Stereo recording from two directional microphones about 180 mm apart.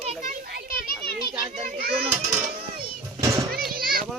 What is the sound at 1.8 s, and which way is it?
Children playing, 60° right (ahead or behind).